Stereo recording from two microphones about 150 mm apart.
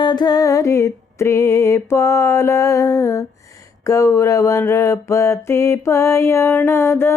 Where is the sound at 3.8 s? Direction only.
20° left (ahead or behind).